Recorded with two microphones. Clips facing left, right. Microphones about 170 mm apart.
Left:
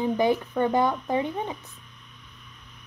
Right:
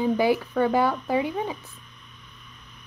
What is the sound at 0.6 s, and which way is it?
Speech, 5° right (ahead or behind).